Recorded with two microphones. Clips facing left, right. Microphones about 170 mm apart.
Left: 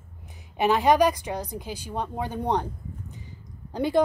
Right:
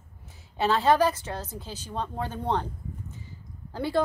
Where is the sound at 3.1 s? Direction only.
15° left (ahead or behind).